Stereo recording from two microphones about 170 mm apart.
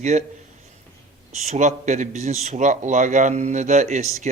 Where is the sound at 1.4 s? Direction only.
45° right (ahead or behind).